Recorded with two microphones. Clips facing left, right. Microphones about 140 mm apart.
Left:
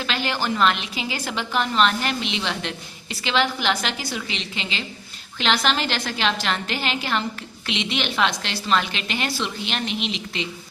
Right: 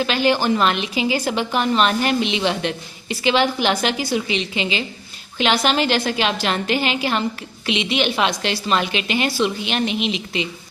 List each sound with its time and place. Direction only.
0.0 s a woman's voice: 15° right (ahead or behind)